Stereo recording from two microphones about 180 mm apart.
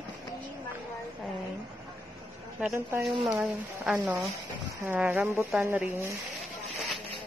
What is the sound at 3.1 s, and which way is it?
Speech, 25° right (ahead or behind).